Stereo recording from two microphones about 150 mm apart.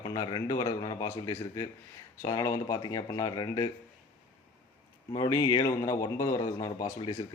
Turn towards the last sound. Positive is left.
turn(degrees=25)  # may be behind; listen again after turning